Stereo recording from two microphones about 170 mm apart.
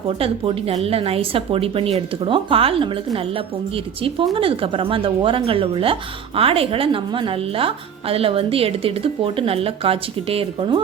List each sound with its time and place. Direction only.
0.2 s a woman's voice: 35° right (ahead or behind)